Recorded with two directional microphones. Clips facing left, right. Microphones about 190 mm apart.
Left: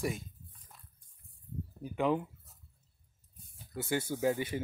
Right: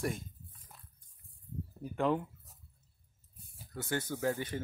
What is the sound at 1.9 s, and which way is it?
Speech, 5° left (ahead or behind).